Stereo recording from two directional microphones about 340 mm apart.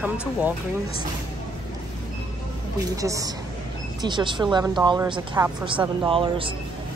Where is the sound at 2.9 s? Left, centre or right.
Centre.